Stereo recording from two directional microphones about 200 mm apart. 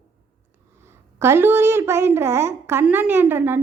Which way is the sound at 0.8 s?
10° right (ahead or behind).